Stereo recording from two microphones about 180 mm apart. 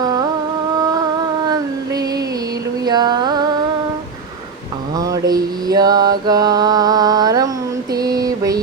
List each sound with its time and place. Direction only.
0.0 s music: 20° right (ahead or behind)
2.8 s music: 25° right (ahead or behind)
4.9 s mantra: 20° right (ahead or behind)
7.9 s a sound: 20° right (ahead or behind)